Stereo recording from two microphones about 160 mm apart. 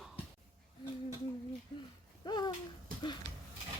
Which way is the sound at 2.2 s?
25° left (ahead or behind).